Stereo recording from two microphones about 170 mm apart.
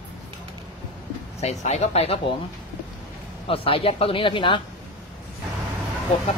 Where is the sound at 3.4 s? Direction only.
35° left (ahead or behind).